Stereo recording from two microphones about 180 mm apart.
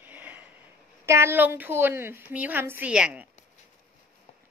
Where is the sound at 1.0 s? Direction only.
15° right (ahead or behind).